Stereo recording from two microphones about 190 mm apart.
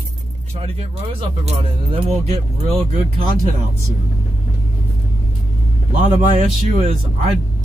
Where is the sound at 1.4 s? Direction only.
30° right (ahead or behind).